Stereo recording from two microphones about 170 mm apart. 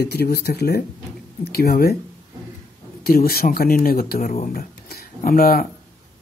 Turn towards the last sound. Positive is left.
turn(degrees=60)  # may be behind; listen again after turning